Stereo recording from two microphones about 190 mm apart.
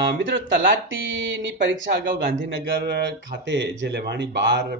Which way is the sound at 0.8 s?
85° right.